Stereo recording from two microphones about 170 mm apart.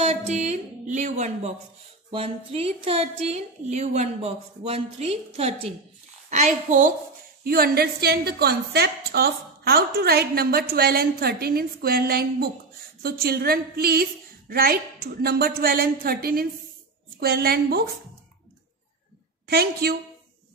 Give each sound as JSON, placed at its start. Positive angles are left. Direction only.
{"t": 0.0, "sound": "music", "side_deg": -40}
{"t": 2.0, "sound": "a woman's voice", "side_deg": -35}
{"t": 6.3, "sound": "music", "side_deg": -45}
{"t": 7.4, "sound": "a woman's voice", "side_deg": -65}
{"t": 19.4, "sound": "a woman's voice", "side_deg": -70}